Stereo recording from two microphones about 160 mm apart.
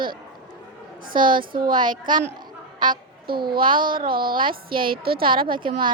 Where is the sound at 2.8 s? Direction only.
60° right (ahead or behind).